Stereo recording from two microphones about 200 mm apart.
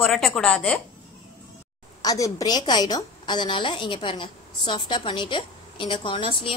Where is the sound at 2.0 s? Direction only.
15° left (ahead or behind).